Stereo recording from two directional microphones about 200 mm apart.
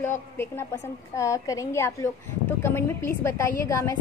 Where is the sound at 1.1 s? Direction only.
15° left (ahead or behind).